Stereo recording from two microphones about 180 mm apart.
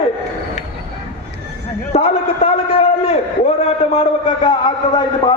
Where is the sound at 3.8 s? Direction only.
30° left (ahead or behind).